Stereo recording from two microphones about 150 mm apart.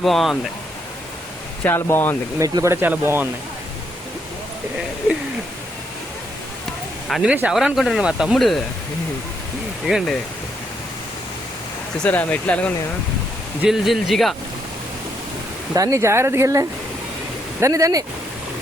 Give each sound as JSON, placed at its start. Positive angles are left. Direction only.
{"t": 0.0, "sound": "speech", "side_deg": 0}
{"t": 1.6, "sound": "speech", "side_deg": 15}
{"t": 2.4, "sound": "speech", "side_deg": -20}
{"t": 7.1, "sound": "speech", "side_deg": -5}
{"t": 9.8, "sound": "speech", "side_deg": 0}
{"t": 11.9, "sound": "speech", "side_deg": 10}
{"t": 13.6, "sound": "speech", "side_deg": 0}
{"t": 15.7, "sound": "speech", "side_deg": -20}